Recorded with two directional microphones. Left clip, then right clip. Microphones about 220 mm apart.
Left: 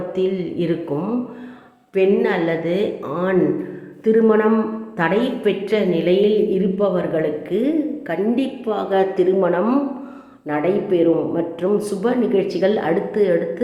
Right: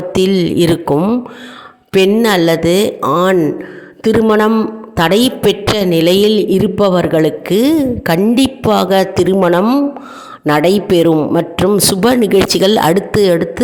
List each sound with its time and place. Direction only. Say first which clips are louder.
0.1 s a man's voice: right 10 dB; 50° right (ahead or behind)